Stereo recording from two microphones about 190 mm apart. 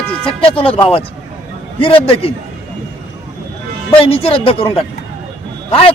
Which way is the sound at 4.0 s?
30° left (ahead or behind).